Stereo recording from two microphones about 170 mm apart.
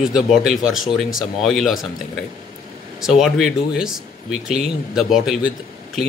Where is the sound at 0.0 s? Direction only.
Centre (ahead or behind).